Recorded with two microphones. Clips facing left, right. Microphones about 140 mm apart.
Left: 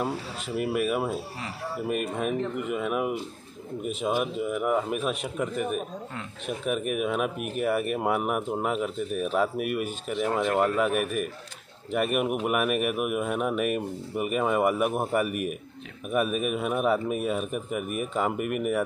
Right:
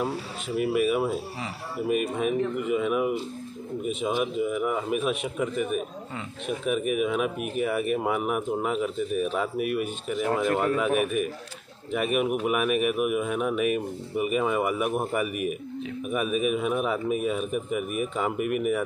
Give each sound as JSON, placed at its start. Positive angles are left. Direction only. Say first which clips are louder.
{"t": 0.6, "sound": "speech", "louder": "right 3 dB", "side_deg": 0}
{"t": 4.2, "sound": "speech", "louder": "right 2 dB", "side_deg": 0}
{"t": 5.6, "sound": "speech", "louder": "right 2 dB", "side_deg": 40}
{"t": 6.1, "sound": "speech", "louder": "right 4 dB", "side_deg": 0}